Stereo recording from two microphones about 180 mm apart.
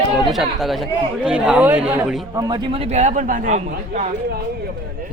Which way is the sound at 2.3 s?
20° right (ahead or behind).